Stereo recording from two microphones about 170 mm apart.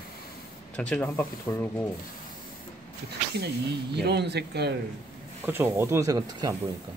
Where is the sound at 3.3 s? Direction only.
75° right (ahead or behind).